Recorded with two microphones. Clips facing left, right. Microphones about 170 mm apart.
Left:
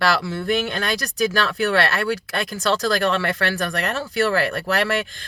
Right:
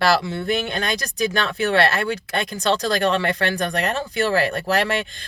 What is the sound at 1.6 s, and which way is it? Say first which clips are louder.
Speech: right 3 dB; 20° right (ahead or behind).